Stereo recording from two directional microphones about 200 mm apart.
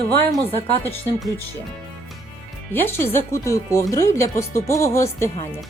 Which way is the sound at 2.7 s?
10° left (ahead or behind).